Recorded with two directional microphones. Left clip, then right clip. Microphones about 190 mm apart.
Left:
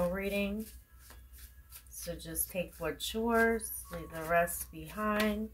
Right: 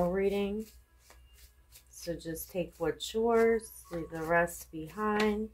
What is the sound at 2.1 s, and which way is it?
Speech, 35° right (ahead or behind).